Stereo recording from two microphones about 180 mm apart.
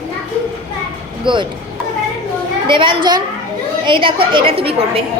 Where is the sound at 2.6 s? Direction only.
25° right (ahead or behind).